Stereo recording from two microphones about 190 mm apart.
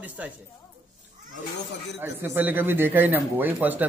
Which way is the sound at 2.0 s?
10° right (ahead or behind).